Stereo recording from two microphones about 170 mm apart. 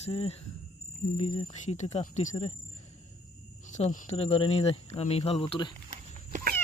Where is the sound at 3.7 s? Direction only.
45° left (ahead or behind).